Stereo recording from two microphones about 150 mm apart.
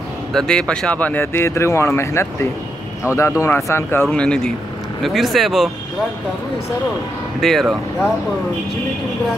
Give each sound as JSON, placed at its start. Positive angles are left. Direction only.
{"t": 0.3, "sound": "speech", "side_deg": 5}
{"t": 7.3, "sound": "speech", "side_deg": 0}